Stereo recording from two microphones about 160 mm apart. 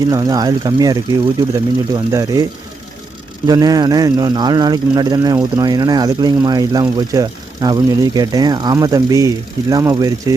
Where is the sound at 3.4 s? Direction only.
25° right (ahead or behind).